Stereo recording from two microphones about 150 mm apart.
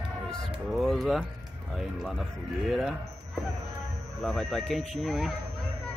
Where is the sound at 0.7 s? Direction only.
Centre (ahead or behind).